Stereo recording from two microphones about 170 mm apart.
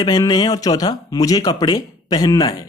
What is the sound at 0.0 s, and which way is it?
Speech, 25° left (ahead or behind).